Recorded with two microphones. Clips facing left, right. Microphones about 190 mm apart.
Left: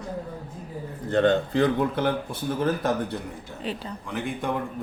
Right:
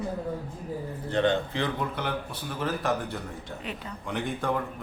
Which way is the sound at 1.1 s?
45° left (ahead or behind).